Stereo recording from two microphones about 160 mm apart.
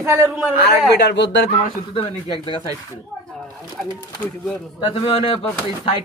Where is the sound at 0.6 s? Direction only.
90° left.